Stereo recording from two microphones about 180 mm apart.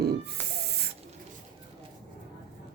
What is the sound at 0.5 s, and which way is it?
Spray, 65° right (ahead or behind).